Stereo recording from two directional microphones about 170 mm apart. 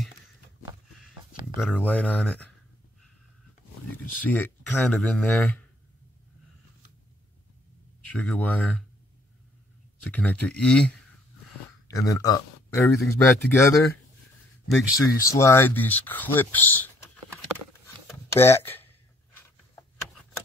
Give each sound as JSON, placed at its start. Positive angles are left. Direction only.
{"t": 1.6, "sound": "speech", "side_deg": 5}
{"t": 4.2, "sound": "speech", "side_deg": 10}
{"t": 8.1, "sound": "speech", "side_deg": 5}
{"t": 10.0, "sound": "speech", "side_deg": 5}
{"t": 11.9, "sound": "speech", "side_deg": 20}
{"t": 15.0, "sound": "speech", "side_deg": 20}
{"t": 18.3, "sound": "speech", "side_deg": 15}